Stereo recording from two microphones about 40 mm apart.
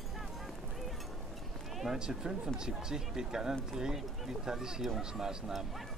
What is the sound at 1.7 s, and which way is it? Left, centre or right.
Run, centre.